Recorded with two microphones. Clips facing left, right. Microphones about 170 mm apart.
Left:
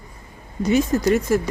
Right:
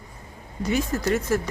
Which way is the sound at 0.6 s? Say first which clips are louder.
Left 6 dB; 20° left (ahead or behind).